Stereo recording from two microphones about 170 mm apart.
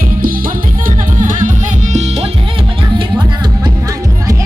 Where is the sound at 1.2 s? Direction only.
50° right (ahead or behind).